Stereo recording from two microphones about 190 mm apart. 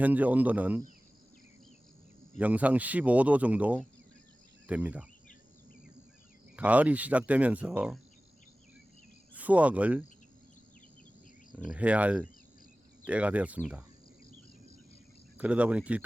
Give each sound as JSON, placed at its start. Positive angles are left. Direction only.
{"t": 0.0, "sound": "speech", "side_deg": -10}
{"t": 2.4, "sound": "speech", "side_deg": -10}
{"t": 4.6, "sound": "cricket", "side_deg": -10}
{"t": 6.6, "sound": "speech", "side_deg": -5}
{"t": 9.3, "sound": "speech", "side_deg": -10}
{"t": 11.6, "sound": "speech", "side_deg": -5}
{"t": 15.4, "sound": "speech", "side_deg": -5}